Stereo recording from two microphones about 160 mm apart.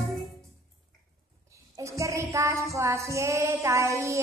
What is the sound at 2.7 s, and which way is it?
A woman's voice, 20° right (ahead or behind).